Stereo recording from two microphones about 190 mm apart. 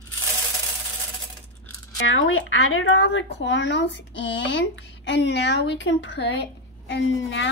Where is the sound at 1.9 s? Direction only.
80° left.